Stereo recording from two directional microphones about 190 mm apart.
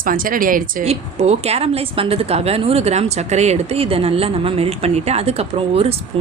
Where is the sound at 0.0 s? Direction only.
45° right (ahead or behind).